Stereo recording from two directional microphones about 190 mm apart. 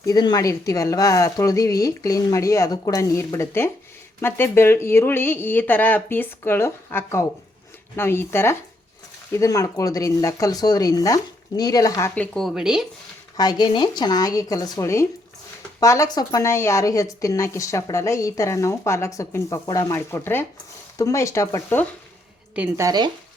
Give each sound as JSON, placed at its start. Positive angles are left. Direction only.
{"t": 0.0, "sound": "a woman's voice", "side_deg": 20}
{"t": 13.3, "sound": "a woman's voice", "side_deg": 20}
{"t": 22.5, "sound": "a woman's voice", "side_deg": -5}
{"t": 22.9, "sound": "speech", "side_deg": -20}